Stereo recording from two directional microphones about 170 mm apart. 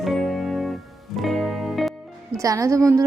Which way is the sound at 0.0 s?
Centre (ahead or behind).